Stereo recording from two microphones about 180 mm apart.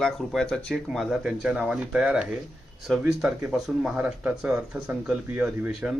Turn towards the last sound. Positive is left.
turn(degrees=-5)  # may be behind; listen again after turning